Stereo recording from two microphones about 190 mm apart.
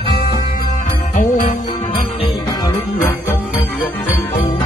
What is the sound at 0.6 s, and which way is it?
Jingle bell, 40° left (ahead or behind).